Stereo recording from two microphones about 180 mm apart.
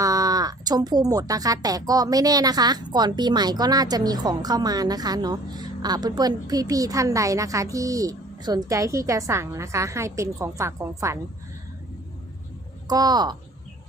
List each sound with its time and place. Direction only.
0.0 s speech: 20° right (ahead or behind)
12.9 s speech: 20° right (ahead or behind)